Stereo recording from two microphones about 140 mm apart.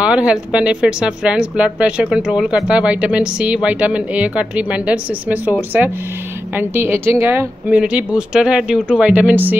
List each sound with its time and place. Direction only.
0.0 s speech: 5° right (ahead or behind)